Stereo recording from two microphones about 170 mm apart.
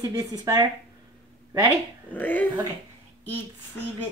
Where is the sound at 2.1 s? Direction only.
10° left (ahead or behind).